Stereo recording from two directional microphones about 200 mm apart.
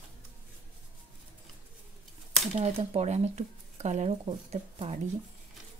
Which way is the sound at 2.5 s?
30° right (ahead or behind).